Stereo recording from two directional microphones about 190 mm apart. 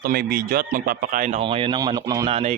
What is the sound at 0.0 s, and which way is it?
Speech, 50° right (ahead or behind).